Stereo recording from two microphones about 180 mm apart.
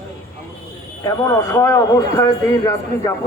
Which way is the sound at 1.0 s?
15° left (ahead or behind).